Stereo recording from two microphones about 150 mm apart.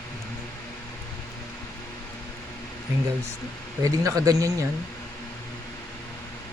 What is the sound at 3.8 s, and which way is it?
Speech, 25° right (ahead or behind).